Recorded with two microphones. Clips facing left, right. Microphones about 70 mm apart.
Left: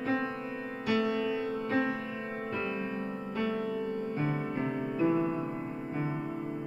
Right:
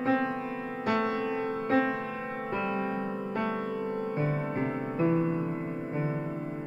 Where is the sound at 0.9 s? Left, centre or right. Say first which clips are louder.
Even; right.